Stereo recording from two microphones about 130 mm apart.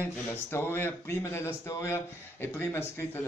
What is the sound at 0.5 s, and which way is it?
A man's voice, 20° left (ahead or behind).